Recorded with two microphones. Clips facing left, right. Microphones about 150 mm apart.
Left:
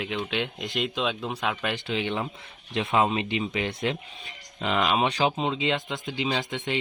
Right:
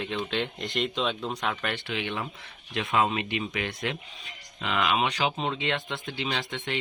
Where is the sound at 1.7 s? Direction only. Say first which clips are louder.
Left 3 dB; 25° left (ahead or behind).